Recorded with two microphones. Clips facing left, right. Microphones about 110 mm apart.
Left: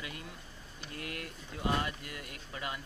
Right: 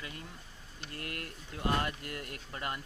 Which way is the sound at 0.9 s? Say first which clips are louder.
Even; 50° right (ahead or behind).